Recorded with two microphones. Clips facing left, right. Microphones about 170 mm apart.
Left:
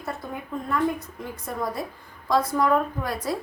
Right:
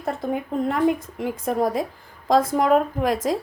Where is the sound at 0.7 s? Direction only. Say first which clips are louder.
Right 3 dB; 90° right.